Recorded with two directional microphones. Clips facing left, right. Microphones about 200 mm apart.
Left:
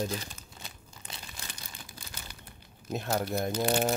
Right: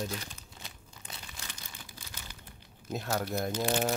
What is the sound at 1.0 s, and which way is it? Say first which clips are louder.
Crumpling: left 1 dB; 30° left (ahead or behind).